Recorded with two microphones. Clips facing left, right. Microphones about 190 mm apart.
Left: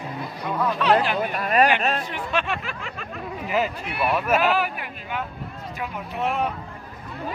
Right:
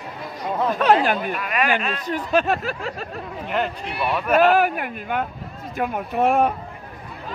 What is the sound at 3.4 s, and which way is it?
Speech, 5° left (ahead or behind).